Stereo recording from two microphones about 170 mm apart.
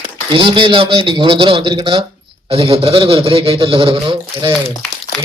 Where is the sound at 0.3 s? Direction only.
30° right (ahead or behind).